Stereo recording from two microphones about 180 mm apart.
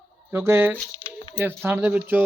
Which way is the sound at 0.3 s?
10° right (ahead or behind).